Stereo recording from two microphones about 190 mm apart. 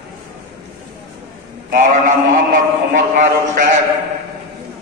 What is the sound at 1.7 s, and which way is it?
Speech, 45° right (ahead or behind).